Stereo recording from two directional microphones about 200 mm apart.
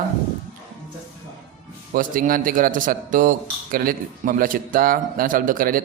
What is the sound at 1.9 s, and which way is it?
A man's voice, 45° right (ahead or behind).